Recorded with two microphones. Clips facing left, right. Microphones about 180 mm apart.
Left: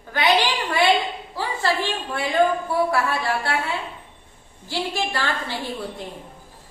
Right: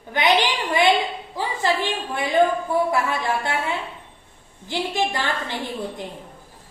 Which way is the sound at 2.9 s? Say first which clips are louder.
Even; 20° right (ahead or behind).